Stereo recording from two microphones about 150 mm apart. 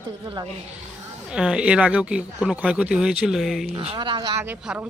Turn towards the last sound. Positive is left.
turn(degrees=-15)  # may be behind; listen again after turning